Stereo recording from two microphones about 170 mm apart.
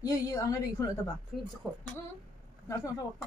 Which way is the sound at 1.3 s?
Centre (ahead or behind).